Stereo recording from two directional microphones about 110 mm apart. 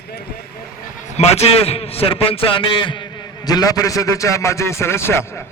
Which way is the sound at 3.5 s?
35° left (ahead or behind).